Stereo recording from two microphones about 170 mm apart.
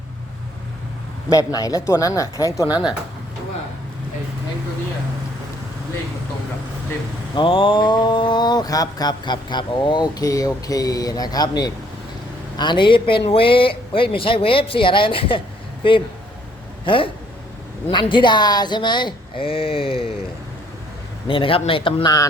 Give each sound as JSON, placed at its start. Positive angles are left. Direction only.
{"t": 1.3, "sound": "speech", "side_deg": 20}
{"t": 7.3, "sound": "a man's voice", "side_deg": 30}
{"t": 21.2, "sound": "a man's voice", "side_deg": 30}